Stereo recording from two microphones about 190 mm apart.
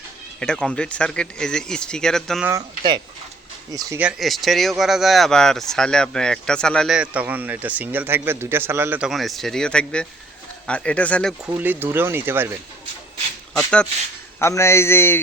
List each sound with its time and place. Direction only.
0.3 s speech: 5° left (ahead or behind)
2.4 s speech: 15° right (ahead or behind)
4.0 s speech: centre (ahead or behind)
11.4 s speech: 10° right (ahead or behind)
13.5 s a man's voice: 5° left (ahead or behind)